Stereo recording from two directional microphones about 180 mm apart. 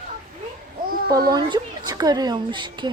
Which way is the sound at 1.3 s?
25° right (ahead or behind).